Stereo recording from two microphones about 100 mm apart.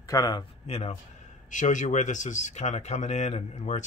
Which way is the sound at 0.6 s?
90° left.